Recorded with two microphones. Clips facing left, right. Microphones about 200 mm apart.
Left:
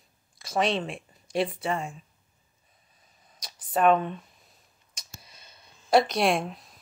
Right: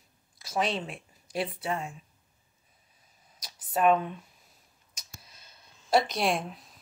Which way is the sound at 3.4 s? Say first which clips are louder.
Left 2 dB; 5° right (ahead or behind).